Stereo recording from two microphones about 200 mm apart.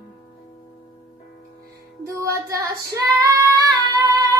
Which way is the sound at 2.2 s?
15° right (ahead or behind).